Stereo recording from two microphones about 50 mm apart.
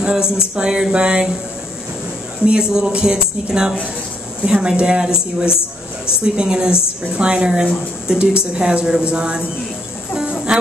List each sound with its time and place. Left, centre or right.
0.3 s speech: centre
2.4 s speech: centre
10.5 s music: centre